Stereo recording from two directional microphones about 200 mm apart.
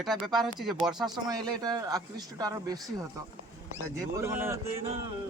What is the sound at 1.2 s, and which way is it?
Speech, 20° right (ahead or behind).